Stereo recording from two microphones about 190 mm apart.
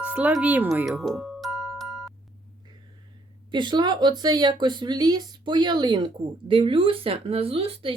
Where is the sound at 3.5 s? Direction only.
25° right (ahead or behind).